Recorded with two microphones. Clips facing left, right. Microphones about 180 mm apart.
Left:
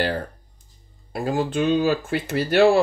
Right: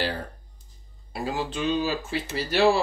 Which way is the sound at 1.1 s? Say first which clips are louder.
Left 6 dB; 50° left (ahead or behind).